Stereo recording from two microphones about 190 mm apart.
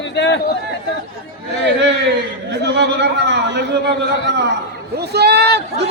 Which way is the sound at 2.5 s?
65° right (ahead or behind).